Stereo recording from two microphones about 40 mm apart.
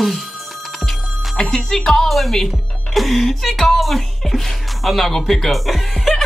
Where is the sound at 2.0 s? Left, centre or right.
Centre.